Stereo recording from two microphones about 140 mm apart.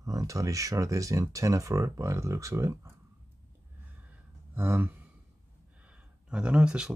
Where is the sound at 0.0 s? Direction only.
25° right (ahead or behind).